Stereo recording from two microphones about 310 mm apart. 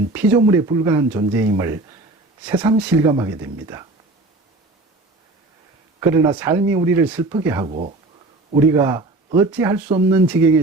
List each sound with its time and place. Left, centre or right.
0.1 s speech: centre
6.0 s speech: centre
7.7 s speech: right; by 10.6 s centre